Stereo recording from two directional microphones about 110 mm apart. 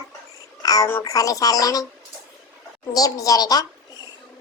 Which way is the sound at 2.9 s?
35° left (ahead or behind).